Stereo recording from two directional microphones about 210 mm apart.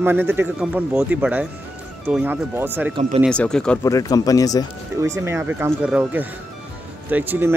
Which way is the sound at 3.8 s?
15° left (ahead or behind).